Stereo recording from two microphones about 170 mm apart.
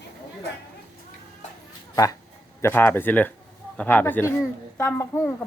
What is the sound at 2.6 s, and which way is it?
Speech, 15° left (ahead or behind).